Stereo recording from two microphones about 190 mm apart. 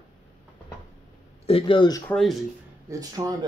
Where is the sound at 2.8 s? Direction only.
20° right (ahead or behind).